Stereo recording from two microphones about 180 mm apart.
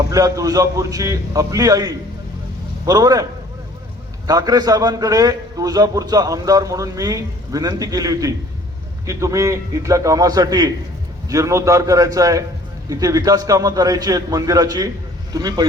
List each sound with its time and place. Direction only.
0.1 s a man's voice: 20° right (ahead or behind)
4.3 s a man's voice: 20° right (ahead or behind)